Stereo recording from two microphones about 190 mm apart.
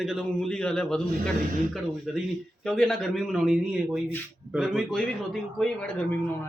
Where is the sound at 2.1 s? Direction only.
Centre (ahead or behind).